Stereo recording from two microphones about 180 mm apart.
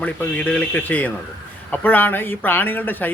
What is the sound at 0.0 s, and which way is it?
A man's voice, 10° left (ahead or behind).